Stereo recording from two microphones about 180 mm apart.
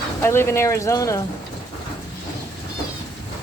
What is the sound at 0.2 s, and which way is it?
Speech, 15° left (ahead or behind).